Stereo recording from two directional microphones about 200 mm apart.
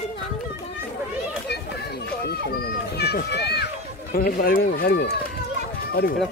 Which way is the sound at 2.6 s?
50° left (ahead or behind).